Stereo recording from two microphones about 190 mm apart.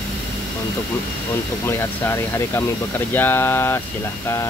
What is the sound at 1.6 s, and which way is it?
Speech, 10° left (ahead or behind).